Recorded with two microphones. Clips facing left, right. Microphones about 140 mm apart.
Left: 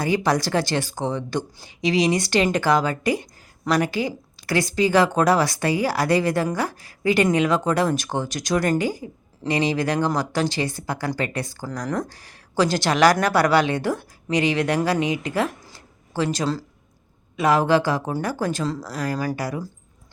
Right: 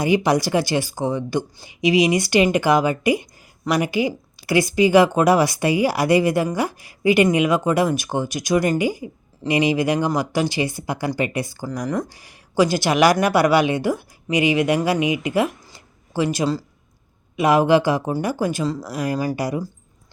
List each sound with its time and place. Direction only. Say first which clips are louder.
0.0 s speech: right 3 dB; 15° right (ahead or behind)
18.9 s speech: right 3 dB; 15° right (ahead or behind)